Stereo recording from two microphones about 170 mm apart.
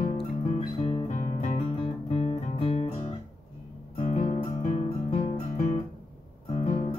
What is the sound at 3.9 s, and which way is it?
Music, 35° left (ahead or behind).